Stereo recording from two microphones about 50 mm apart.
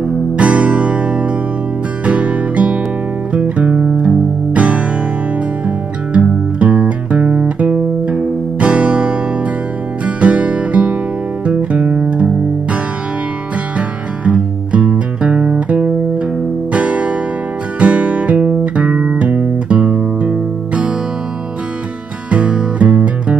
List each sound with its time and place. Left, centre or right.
0.0 s music: right
6.1 s music: right
13.7 s music: right
22.3 s music: right